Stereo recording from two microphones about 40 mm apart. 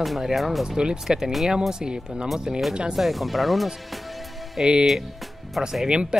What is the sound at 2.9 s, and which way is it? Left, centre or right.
Speech, centre.